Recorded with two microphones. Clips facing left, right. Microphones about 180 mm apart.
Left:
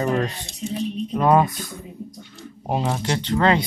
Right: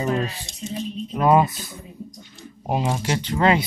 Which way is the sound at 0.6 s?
10° left (ahead or behind).